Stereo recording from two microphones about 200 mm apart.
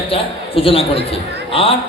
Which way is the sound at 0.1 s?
30° left (ahead or behind).